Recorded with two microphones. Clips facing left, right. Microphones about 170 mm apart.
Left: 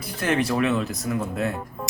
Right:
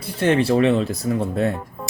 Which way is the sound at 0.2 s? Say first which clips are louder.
Right 6 dB; 30° right (ahead or behind).